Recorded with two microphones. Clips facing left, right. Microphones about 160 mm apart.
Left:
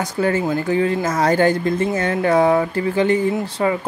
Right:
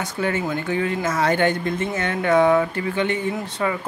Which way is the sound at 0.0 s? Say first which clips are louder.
Left 5 dB; 35° left (ahead or behind).